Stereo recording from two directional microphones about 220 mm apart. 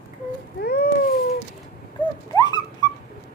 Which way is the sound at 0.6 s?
45° left (ahead or behind).